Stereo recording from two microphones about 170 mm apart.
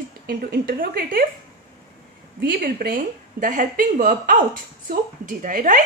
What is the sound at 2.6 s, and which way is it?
A woman's voice, 55° right (ahead or behind).